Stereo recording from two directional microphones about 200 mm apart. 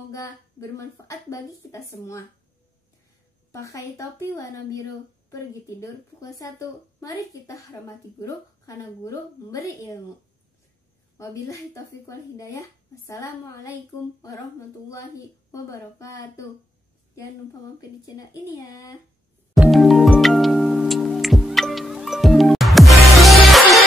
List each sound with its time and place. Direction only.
0.1 s a woman's voice: 15° left (ahead or behind)
3.5 s a woman's voice: 15° left (ahead or behind)
11.1 s a woman's voice: 15° left (ahead or behind)
15.5 s a woman's voice: 15° left (ahead or behind)
17.7 s a woman's voice: 20° left (ahead or behind)
19.5 s music: centre (ahead or behind)